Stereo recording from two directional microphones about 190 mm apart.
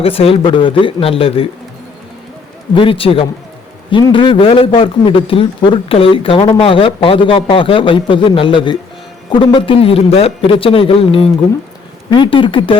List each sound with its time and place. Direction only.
0.0 s a man's voice: 30° left (ahead or behind)
2.7 s a man's voice: 25° left (ahead or behind)